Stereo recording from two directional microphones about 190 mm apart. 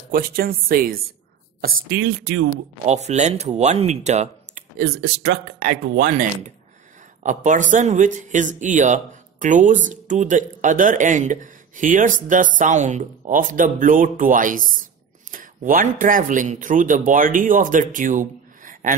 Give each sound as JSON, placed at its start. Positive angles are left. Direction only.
{"t": 0.1, "sound": "speech", "side_deg": -50}
{"t": 2.9, "sound": "speech", "side_deg": -35}